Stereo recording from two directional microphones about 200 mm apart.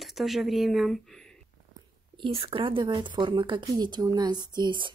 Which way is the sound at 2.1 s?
25° right (ahead or behind).